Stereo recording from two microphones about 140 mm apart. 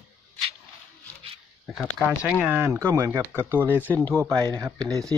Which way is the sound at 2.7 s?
20° right (ahead or behind).